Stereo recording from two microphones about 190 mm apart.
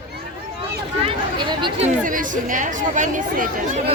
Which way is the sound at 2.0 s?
45° right (ahead or behind).